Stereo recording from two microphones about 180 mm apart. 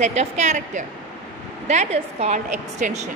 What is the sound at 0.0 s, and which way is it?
A woman's voice, 40° right (ahead or behind).